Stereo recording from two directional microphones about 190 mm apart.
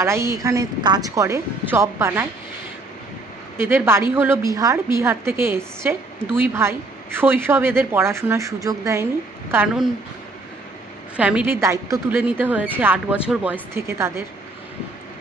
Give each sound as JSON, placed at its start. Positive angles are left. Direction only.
{"t": 0.0, "sound": "a woman's voice", "side_deg": -15}
{"t": 3.5, "sound": "a woman's voice", "side_deg": -10}
{"t": 11.1, "sound": "a woman's voice", "side_deg": -5}